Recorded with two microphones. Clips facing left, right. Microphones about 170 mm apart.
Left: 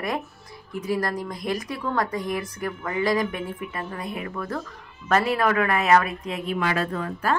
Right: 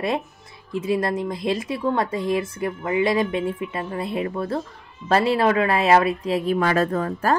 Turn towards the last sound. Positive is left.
turn(degrees=-40)  # may be behind; listen again after turning